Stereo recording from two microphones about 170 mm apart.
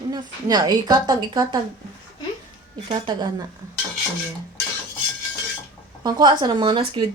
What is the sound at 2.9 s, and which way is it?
Speech, 30° right (ahead or behind).